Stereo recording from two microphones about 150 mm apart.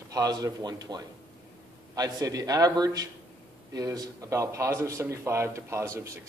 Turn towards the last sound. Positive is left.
turn(degrees=-20)  # may be behind; listen again after turning